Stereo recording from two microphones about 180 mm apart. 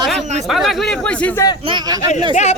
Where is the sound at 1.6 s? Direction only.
25° right (ahead or behind).